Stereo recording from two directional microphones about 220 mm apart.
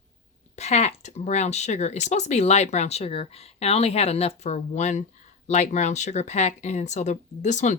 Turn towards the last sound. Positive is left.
turn(degrees=35)  # may be behind; listen again after turning